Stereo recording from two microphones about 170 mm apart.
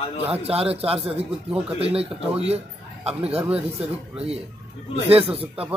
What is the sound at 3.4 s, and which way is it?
Speech, 5° right (ahead or behind).